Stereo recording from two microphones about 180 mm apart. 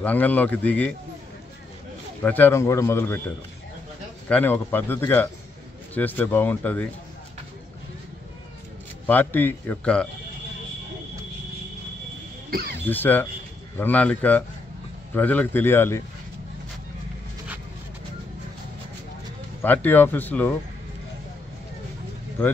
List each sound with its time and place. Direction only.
0.0 s a man's voice: 10° left (ahead or behind)
2.2 s a man's voice: 10° left (ahead or behind)
4.3 s a man's voice: 10° left (ahead or behind)
9.0 s a man's voice: 10° left (ahead or behind)
12.4 s speech: 60° right (ahead or behind)
12.7 s a man's voice: 10° left (ahead or behind)
19.6 s a man's voice: 10° left (ahead or behind)